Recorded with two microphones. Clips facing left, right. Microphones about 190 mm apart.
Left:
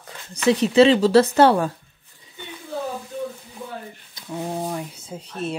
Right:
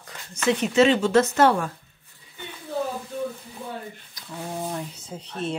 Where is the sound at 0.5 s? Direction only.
35° left (ahead or behind).